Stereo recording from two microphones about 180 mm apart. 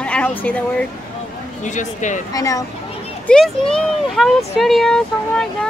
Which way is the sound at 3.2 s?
5° left (ahead or behind).